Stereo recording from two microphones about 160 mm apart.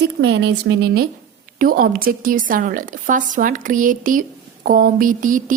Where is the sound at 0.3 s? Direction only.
90° right.